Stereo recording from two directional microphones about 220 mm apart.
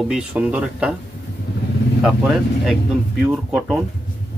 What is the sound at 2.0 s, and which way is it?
A man's voice, 5° right (ahead or behind).